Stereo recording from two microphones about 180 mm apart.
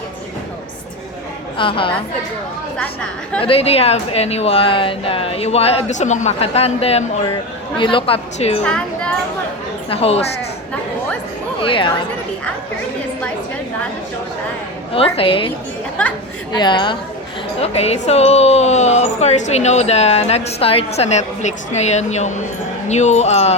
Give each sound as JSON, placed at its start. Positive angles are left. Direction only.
{"t": 1.5, "sound": "a woman's voice", "side_deg": 30}
{"t": 2.7, "sound": "a woman's voice", "side_deg": 5}
{"t": 3.4, "sound": "speech", "side_deg": 30}
{"t": 8.6, "sound": "a woman's voice", "side_deg": 5}
{"t": 9.9, "sound": "speech", "side_deg": 35}
{"t": 11.6, "sound": "a woman's voice", "side_deg": 30}
{"t": 14.9, "sound": "speech", "side_deg": 30}
{"t": 16.6, "sound": "a woman's voice", "side_deg": 25}